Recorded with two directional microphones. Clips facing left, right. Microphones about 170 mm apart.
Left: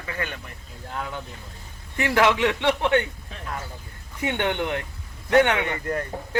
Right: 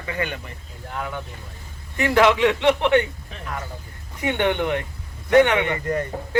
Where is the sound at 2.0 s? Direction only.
15° right (ahead or behind).